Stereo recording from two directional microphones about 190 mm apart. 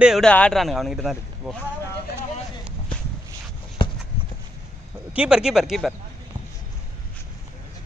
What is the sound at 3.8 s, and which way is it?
Walk, 25° left (ahead or behind).